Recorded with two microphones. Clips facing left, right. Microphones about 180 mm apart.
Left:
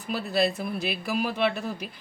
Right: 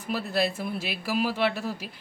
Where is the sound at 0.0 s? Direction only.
Centre (ahead or behind).